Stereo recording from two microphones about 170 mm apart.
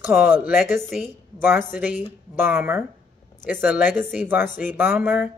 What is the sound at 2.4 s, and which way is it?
Speech, 15° right (ahead or behind).